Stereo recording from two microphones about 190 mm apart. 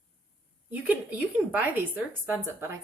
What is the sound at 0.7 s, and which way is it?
A woman's voice, 10° right (ahead or behind).